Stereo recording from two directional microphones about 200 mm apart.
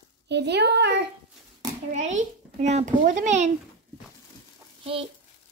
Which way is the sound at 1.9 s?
35° right (ahead or behind).